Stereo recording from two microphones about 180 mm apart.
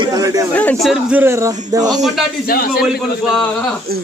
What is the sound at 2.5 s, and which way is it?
Speech, 55° left (ahead or behind).